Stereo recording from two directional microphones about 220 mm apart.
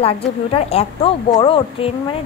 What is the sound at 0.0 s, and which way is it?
A woman's voice, 25° left (ahead or behind).